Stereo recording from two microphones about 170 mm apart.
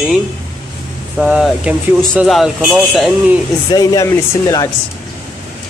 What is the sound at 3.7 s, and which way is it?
Speech, 20° left (ahead or behind).